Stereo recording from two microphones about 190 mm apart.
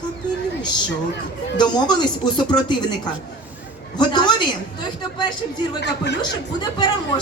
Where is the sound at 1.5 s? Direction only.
25° left (ahead or behind).